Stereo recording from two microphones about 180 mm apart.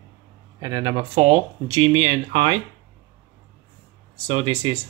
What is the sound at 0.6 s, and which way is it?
Speech, 25° right (ahead or behind).